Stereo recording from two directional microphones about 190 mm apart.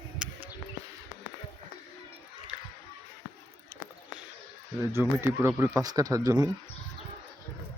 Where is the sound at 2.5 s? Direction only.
5° right (ahead or behind).